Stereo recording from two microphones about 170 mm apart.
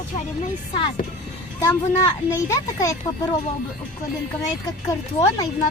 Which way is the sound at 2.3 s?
20° left (ahead or behind).